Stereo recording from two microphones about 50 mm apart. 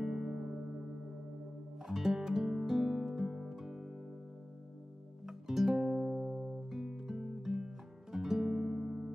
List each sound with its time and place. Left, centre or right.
0.0 s music: centre
1.9 s music: centre
5.2 s music: centre